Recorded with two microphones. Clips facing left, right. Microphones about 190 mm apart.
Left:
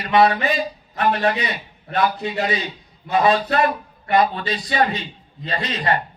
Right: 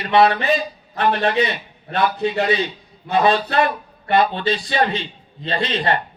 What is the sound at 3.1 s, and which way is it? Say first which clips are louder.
A man's voice: even; 30° right (ahead or behind).